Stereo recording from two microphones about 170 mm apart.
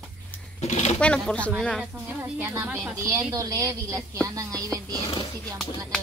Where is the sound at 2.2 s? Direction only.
15° right (ahead or behind).